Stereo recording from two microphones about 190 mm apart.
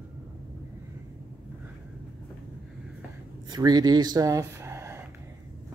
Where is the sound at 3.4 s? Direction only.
20° right (ahead or behind).